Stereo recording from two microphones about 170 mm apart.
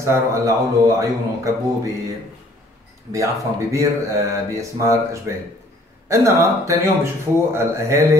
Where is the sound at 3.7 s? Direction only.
20° right (ahead or behind).